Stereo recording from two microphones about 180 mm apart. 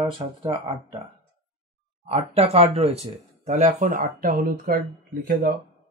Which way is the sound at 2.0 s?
35° right (ahead or behind).